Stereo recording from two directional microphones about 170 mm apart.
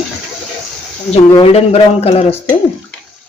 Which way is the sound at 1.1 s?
35° left (ahead or behind).